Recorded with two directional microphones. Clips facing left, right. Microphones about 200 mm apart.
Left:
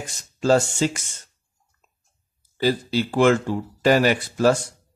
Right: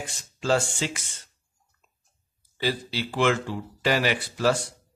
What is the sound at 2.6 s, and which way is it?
Speech, 45° left (ahead or behind).